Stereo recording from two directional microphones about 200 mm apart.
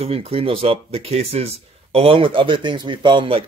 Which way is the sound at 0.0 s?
30° right (ahead or behind).